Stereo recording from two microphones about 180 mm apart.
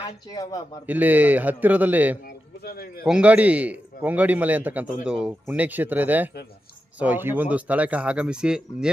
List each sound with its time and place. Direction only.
0.3 s speech: 20° left (ahead or behind)
0.9 s a man's voice: 10° right (ahead or behind)
2.2 s speech: 60° left (ahead or behind)
3.0 s a man's voice: 5° right (ahead or behind)